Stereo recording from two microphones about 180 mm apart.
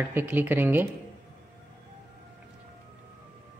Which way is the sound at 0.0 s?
10° right (ahead or behind).